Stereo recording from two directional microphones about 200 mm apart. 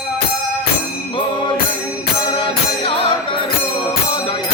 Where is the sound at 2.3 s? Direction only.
25° left (ahead or behind).